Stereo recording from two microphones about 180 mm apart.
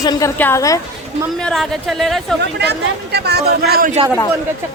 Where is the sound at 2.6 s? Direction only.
65° right (ahead or behind).